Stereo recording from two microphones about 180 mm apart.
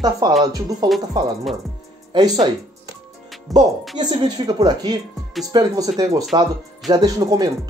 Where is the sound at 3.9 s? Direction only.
25° right (ahead or behind).